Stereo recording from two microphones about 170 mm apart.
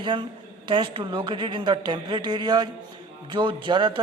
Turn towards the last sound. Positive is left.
turn(degrees=-25)  # may be behind; listen again after turning